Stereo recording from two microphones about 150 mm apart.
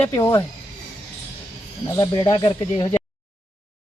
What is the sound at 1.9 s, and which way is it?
Speech, 25° left (ahead or behind).